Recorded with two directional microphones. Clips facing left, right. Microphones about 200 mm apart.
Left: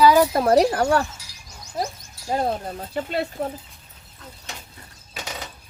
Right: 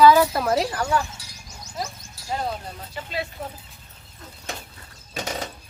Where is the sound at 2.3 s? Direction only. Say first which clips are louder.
Left 5 dB; 45° left (ahead or behind).